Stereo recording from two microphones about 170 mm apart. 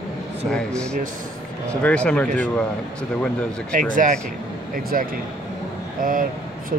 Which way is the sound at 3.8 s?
50° right (ahead or behind).